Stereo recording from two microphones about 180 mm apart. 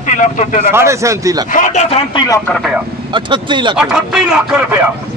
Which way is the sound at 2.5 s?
Centre (ahead or behind).